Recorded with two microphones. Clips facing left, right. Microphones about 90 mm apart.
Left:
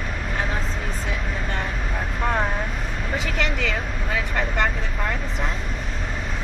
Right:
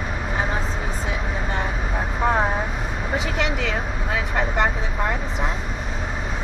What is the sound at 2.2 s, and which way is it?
Vehicle, 30° right (ahead or behind).